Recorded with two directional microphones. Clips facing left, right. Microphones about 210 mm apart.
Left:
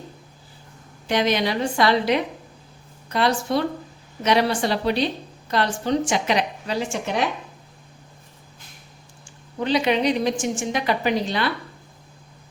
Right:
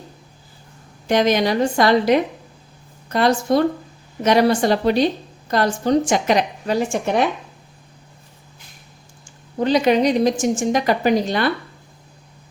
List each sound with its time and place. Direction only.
1.0 s a woman's voice: 45° right (ahead or behind)
9.6 s a woman's voice: 40° right (ahead or behind)